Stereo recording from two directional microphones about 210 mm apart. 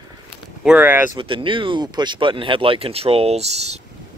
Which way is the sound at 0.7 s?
5° right (ahead or behind).